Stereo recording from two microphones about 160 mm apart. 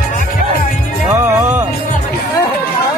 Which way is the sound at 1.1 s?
15° right (ahead or behind).